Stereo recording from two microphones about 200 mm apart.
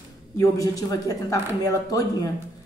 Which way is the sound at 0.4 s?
15° left (ahead or behind).